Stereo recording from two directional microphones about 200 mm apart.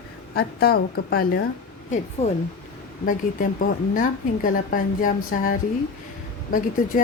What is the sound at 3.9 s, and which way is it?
A woman's voice, 40° left (ahead or behind).